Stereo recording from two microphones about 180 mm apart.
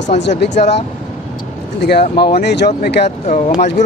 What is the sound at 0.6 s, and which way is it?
Speech, 40° left (ahead or behind).